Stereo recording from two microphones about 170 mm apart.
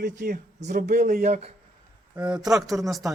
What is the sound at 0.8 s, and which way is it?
Speech, 55° right (ahead or behind).